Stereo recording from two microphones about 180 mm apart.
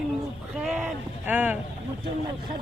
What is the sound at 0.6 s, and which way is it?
Speech, 5° right (ahead or behind).